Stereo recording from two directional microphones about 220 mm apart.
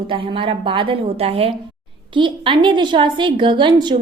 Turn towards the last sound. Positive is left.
turn(degrees=-20)  # may be behind; listen again after turning